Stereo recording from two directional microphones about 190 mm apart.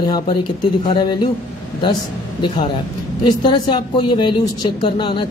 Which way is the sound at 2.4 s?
25° left (ahead or behind).